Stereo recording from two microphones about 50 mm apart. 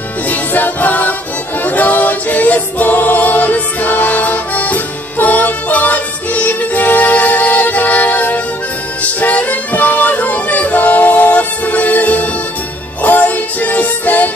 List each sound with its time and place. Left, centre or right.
0.3 s music: left